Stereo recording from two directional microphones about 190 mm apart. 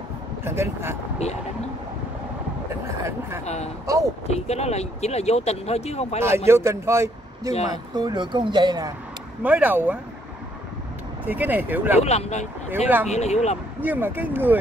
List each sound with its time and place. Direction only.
0.5 s speech: 15° right (ahead or behind)
3.0 s speech: 15° right (ahead or behind)
3.4 s speech: 35° left (ahead or behind)
3.8 s speech: 15° right (ahead or behind)
4.3 s speech: 35° left (ahead or behind)
6.2 s speech: 15° right (ahead or behind)
9.4 s speech: 10° right (ahead or behind)
11.2 s speech: 10° right (ahead or behind)
12.0 s speech: 35° left (ahead or behind)
13.7 s speech: 10° right (ahead or behind)